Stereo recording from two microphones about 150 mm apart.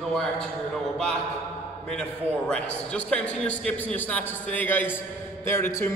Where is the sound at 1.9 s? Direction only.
5° left (ahead or behind).